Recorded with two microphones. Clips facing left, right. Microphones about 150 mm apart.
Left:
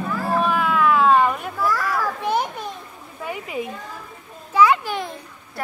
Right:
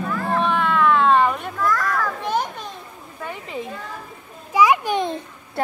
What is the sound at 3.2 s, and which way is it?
Speech, 10° left (ahead or behind).